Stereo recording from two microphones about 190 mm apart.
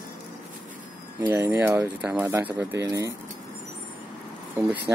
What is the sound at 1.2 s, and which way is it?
Speech, 15° right (ahead or behind).